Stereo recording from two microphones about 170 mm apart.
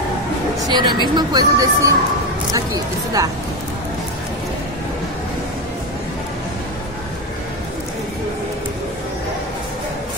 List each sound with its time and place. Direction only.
0.7 s a woman's voice: 25° right (ahead or behind)